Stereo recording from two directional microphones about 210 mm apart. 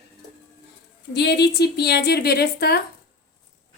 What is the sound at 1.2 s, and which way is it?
A woman's voice, 50° left (ahead or behind).